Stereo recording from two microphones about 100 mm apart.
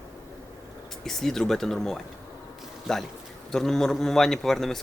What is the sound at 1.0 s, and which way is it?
Speech, 5° left (ahead or behind).